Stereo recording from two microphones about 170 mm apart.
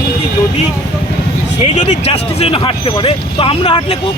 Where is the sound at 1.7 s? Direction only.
40° left (ahead or behind).